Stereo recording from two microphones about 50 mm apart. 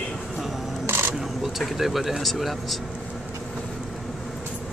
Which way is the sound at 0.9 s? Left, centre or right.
Right.